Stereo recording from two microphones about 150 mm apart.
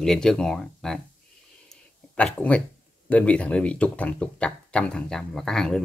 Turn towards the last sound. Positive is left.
turn(degrees=5)  # may be behind; listen again after turning